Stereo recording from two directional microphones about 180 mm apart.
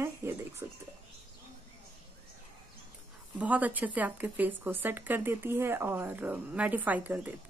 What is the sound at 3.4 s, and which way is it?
Speech, 10° right (ahead or behind).